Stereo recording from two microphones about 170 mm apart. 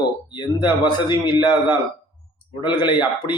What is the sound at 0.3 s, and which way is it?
A man's voice, 25° left (ahead or behind).